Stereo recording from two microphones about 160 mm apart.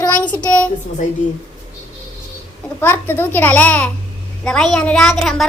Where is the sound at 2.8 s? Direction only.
15° left (ahead or behind).